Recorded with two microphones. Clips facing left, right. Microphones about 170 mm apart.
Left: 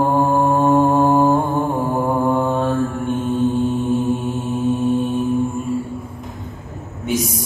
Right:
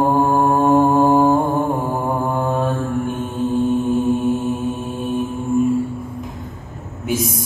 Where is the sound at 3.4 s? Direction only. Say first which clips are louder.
Right 4 dB; centre (ahead or behind).